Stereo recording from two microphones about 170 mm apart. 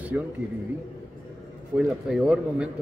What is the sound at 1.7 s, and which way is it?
Speech, 5° right (ahead or behind).